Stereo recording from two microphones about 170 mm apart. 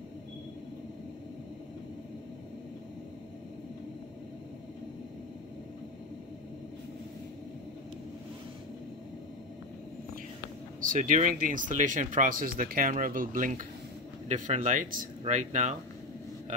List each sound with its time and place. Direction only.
10.8 s speech: 50° right (ahead or behind)